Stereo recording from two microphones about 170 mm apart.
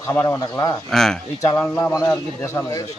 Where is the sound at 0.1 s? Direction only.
10° left (ahead or behind).